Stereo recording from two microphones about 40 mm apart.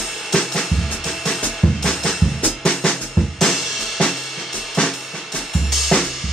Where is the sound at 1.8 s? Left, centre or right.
Centre.